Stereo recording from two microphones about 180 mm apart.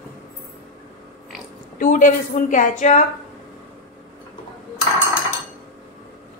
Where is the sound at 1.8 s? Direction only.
45° left (ahead or behind).